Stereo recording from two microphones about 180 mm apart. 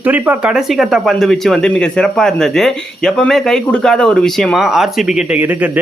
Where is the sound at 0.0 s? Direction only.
10° right (ahead or behind).